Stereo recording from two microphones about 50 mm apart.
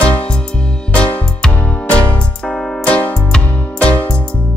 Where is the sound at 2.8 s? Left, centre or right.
Left.